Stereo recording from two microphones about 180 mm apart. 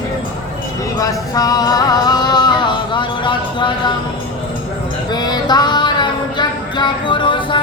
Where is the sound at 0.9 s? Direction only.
20° left (ahead or behind).